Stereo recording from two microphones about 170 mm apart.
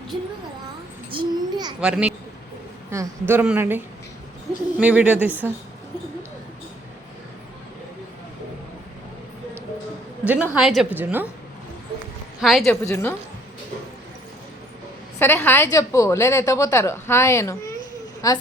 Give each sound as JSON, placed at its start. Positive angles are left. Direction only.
{"t": 1.1, "sound": "babbling", "side_deg": -25}
{"t": 1.8, "sound": "speech", "side_deg": -5}
{"t": 10.2, "sound": "speech", "side_deg": -10}
{"t": 12.4, "sound": "speech", "side_deg": 0}
{"t": 12.8, "sound": "a woman's voice", "side_deg": 15}
{"t": 15.2, "sound": "a woman's voice", "side_deg": 10}